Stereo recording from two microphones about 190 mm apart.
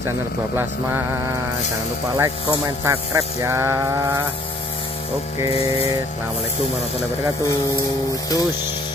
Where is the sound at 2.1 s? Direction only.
15° right (ahead or behind).